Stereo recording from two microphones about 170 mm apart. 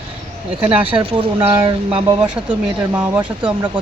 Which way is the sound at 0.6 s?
30° right (ahead or behind).